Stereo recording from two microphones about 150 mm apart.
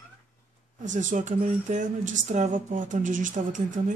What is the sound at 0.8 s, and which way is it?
Speech, 55° right (ahead or behind).